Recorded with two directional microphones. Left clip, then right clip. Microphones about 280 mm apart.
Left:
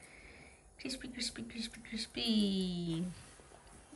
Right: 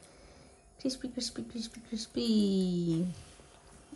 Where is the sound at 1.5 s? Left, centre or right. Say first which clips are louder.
Right 2 dB; centre.